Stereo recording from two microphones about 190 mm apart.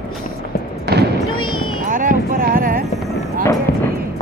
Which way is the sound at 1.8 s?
45° right (ahead or behind).